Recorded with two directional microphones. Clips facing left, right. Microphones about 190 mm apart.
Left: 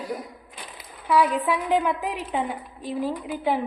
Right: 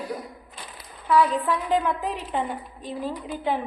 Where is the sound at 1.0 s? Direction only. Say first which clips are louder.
Even; 15° left (ahead or behind).